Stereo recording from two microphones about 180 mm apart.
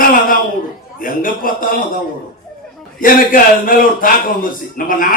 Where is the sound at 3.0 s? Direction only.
50° left (ahead or behind).